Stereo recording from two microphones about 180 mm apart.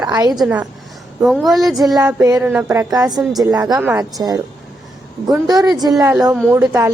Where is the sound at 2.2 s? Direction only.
20° right (ahead or behind).